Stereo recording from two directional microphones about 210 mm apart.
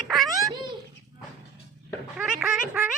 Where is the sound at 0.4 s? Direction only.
20° right (ahead or behind).